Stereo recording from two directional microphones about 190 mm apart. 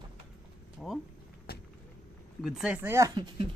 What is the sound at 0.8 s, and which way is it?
Speech, 5° left (ahead or behind).